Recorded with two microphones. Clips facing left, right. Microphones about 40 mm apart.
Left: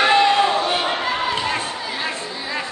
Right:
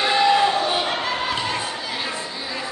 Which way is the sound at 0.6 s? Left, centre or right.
Centre.